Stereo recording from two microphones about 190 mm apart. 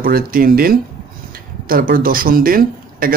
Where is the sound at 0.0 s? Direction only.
50° right (ahead or behind).